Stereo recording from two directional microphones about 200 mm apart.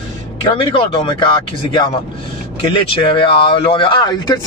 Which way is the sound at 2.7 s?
25° left (ahead or behind).